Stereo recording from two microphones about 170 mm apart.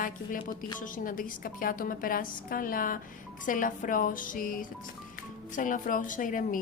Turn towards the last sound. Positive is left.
turn(degrees=50)  # may be behind; listen again after turning